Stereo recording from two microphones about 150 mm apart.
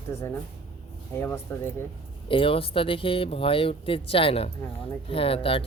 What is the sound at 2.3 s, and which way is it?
Speech, 35° left (ahead or behind).